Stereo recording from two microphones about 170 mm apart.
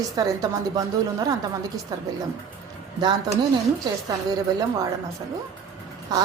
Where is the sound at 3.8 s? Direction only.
20° right (ahead or behind).